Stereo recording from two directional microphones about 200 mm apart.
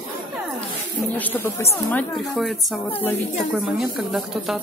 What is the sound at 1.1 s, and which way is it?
A woman's voice, 10° left (ahead or behind).